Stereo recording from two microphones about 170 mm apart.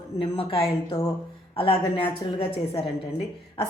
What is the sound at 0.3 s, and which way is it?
A woman's voice, 35° left (ahead or behind).